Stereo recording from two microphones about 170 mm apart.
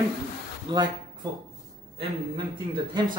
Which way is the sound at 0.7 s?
25° right (ahead or behind).